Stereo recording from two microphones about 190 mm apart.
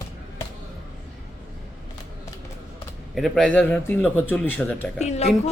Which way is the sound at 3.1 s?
Centre (ahead or behind).